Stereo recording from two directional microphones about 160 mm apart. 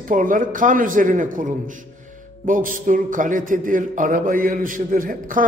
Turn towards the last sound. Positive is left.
turn(degrees=-60)  # may be behind; listen again after turning